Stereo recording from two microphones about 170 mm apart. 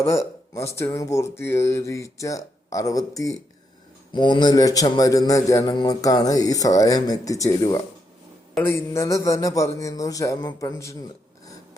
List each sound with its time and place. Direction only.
0.0 s speech: 15° left (ahead or behind)
4.1 s a man's voice: 25° left (ahead or behind)